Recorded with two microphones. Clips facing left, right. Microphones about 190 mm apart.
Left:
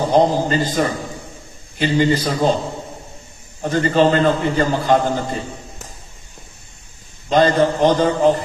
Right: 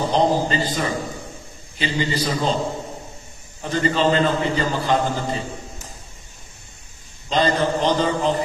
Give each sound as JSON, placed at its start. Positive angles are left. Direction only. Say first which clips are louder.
{"t": 0.1, "sound": "a man's voice", "louder": "left 5 dB", "side_deg": 50}
{"t": 3.6, "sound": "a man's voice", "louder": "left 5 dB", "side_deg": 50}
{"t": 7.3, "sound": "a man's voice", "louder": "left 5 dB", "side_deg": 50}